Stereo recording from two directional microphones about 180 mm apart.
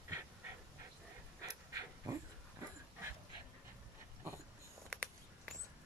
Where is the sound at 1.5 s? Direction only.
20° right (ahead or behind).